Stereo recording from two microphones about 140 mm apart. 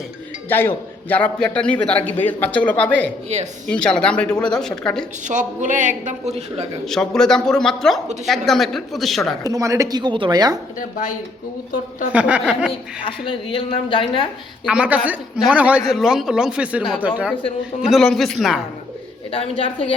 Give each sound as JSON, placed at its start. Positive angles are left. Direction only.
{"t": 0.4, "sound": "a man's voice", "side_deg": 15}
{"t": 3.3, "sound": "a woman's voice", "side_deg": -55}
{"t": 3.7, "sound": "a man's voice", "side_deg": 5}
{"t": 5.3, "sound": "speech", "side_deg": -60}
{"t": 6.1, "sound": "a woman's voice", "side_deg": -50}
{"t": 6.8, "sound": "speech", "side_deg": 5}
{"t": 9.4, "sound": "speech", "side_deg": -25}
{"t": 10.8, "sound": "a woman's voice", "side_deg": 70}
{"t": 12.1, "sound": "a man's voice", "side_deg": -10}
{"t": 13.1, "sound": "a woman's voice", "side_deg": 40}
{"t": 14.7, "sound": "a man's voice", "side_deg": -10}
{"t": 17.8, "sound": "speech", "side_deg": 0}
{"t": 19.3, "sound": "a woman's voice", "side_deg": 40}